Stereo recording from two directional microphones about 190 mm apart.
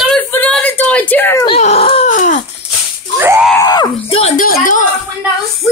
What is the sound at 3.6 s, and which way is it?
Speech, 20° left (ahead or behind).